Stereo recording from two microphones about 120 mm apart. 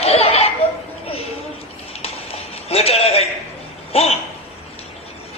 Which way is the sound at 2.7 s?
60° left (ahead or behind).